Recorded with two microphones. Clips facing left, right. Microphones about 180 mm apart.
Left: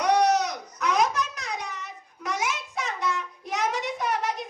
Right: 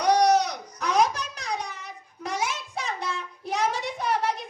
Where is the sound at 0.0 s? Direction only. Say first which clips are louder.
Right 1 dB; 35° right (ahead or behind).